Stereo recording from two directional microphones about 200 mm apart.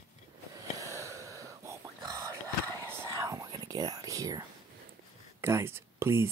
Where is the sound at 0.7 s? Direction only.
15° right (ahead or behind).